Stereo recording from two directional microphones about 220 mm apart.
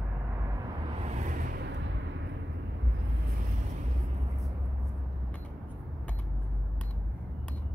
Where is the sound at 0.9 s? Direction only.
30° right (ahead or behind).